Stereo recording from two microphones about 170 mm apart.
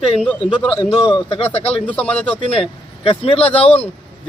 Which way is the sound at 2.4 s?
35° left (ahead or behind).